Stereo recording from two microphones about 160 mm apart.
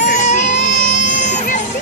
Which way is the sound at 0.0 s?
50° left (ahead or behind).